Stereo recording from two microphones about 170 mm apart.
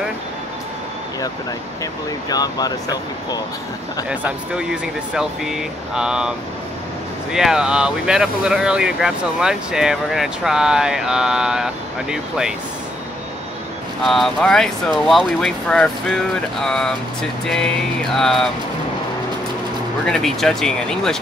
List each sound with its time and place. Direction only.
2.2 s speech: 20° left (ahead or behind)
4.1 s speech: 5° right (ahead or behind)
7.3 s speech: 5° right (ahead or behind)
14.0 s speech: centre (ahead or behind)
20.1 s speech: centre (ahead or behind)